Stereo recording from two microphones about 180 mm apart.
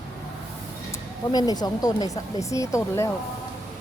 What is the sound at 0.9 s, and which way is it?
Speech, 20° left (ahead or behind).